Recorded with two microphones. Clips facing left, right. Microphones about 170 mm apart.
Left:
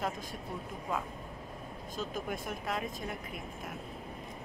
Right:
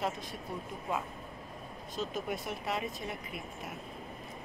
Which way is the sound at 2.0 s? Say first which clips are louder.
Right 1 dB; centre (ahead or behind).